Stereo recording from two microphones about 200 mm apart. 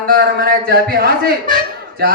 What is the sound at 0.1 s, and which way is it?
A man's voice, 50° right (ahead or behind).